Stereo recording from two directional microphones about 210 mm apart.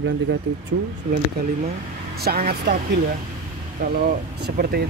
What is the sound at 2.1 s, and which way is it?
Speech, 45° right (ahead or behind).